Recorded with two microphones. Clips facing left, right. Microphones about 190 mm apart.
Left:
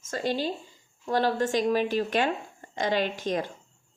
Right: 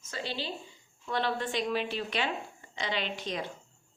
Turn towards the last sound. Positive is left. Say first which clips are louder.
# left 6 dB
turn(degrees=45)  # may be behind; listen again after turning